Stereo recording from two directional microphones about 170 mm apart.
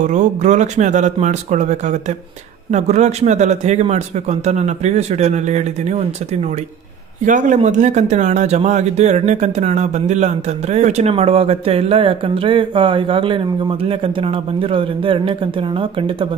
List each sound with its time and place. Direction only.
0.0 s a man's voice: 45° right (ahead or behind)